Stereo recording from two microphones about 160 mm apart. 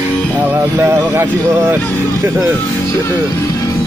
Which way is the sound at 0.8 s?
15° right (ahead or behind).